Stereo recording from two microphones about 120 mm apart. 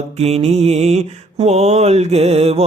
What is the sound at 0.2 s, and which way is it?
Mantra, 60° right (ahead or behind).